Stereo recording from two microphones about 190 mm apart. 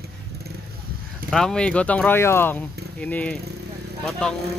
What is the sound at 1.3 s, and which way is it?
Speech, 5° left (ahead or behind).